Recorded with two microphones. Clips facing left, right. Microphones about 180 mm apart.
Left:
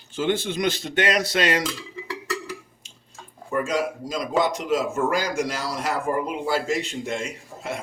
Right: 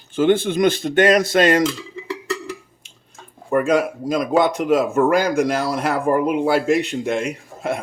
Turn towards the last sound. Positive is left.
turn(degrees=-60)  # may be behind; listen again after turning